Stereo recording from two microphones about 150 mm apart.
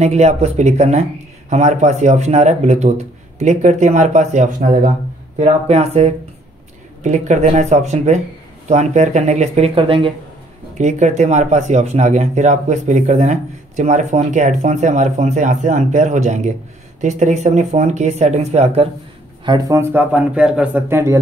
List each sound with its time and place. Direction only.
0.0 s speech: 50° right (ahead or behind)
5.4 s speech: 45° right (ahead or behind)
10.7 s speech: 50° right (ahead or behind)
19.4 s speech: 30° right (ahead or behind)
19.8 s speech: 15° right (ahead or behind)